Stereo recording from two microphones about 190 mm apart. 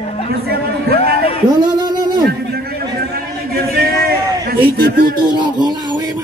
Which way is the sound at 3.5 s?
55° right (ahead or behind).